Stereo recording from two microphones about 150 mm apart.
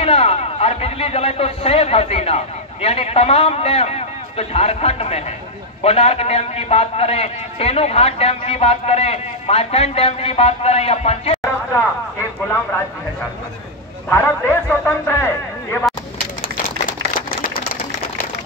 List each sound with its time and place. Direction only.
0.0 s a man's voice: 45° left (ahead or behind)
14.0 s a man's voice: 15° left (ahead or behind)